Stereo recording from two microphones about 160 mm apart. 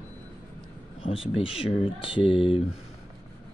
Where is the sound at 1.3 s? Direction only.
35° left (ahead or behind).